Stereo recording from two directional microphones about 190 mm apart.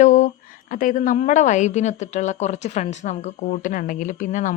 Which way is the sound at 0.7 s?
45° left (ahead or behind).